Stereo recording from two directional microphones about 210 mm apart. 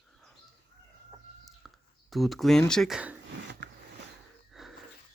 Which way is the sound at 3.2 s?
55° right (ahead or behind).